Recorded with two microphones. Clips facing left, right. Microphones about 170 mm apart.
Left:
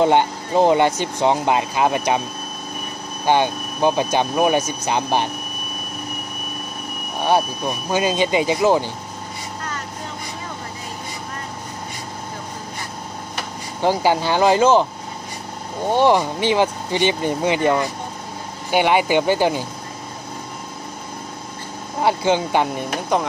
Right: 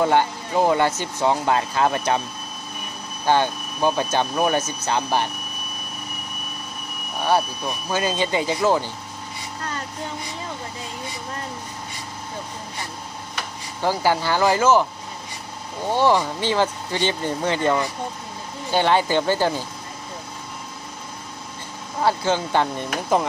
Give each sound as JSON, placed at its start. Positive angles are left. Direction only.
{"t": 0.0, "sound": "speech", "side_deg": 20}
{"t": 3.3, "sound": "speech", "side_deg": 15}
{"t": 7.2, "sound": "speech", "side_deg": 20}
{"t": 13.8, "sound": "speech", "side_deg": 20}
{"t": 15.9, "sound": "speech", "side_deg": 20}
{"t": 22.0, "sound": "speech", "side_deg": 15}
{"t": 23.1, "sound": "speech", "side_deg": -5}